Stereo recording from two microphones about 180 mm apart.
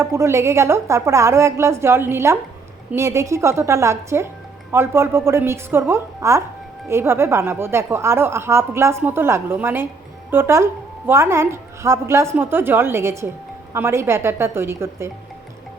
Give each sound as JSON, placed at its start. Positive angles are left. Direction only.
{"t": 0.0, "sound": "a woman's voice", "side_deg": -15}